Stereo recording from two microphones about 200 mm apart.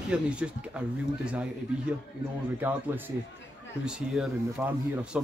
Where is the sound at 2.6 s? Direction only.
10° right (ahead or behind).